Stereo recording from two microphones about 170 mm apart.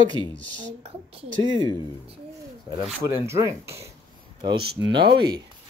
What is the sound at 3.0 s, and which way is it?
Speech, 15° right (ahead or behind).